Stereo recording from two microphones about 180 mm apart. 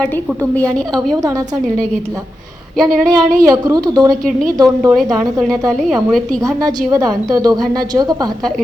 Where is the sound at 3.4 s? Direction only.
20° right (ahead or behind).